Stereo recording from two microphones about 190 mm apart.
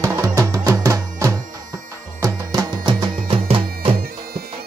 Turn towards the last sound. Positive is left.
turn(degrees=-30)  # may be behind; listen again after turning